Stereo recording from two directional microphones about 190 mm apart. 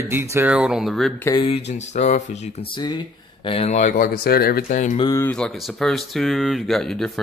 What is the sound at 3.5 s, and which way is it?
Speech, 35° left (ahead or behind).